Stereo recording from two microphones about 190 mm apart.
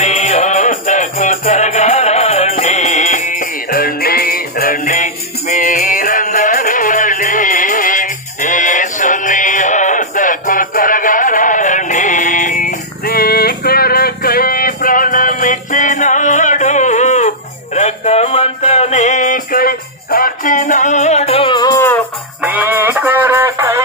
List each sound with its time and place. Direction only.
0.0 s music: 40° left (ahead or behind)
17.7 s a sound: 35° left (ahead or behind); by 22.0 s 15° left (ahead or behind)
22.4 s music: 10° right (ahead or behind)